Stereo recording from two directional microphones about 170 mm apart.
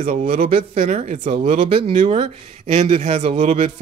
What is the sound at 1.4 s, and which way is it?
Speech, 35° right (ahead or behind).